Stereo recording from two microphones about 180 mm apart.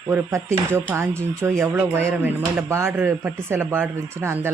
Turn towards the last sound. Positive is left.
turn(degrees=-15)  # may be behind; listen again after turning